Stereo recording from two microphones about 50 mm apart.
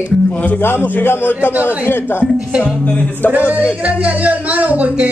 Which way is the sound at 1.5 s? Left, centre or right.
Right.